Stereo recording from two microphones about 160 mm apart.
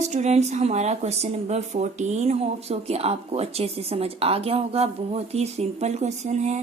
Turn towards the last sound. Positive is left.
turn(degrees=-45)  # may be behind; listen again after turning